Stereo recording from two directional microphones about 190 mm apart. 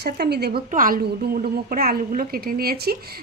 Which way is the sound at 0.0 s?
60° right (ahead or behind).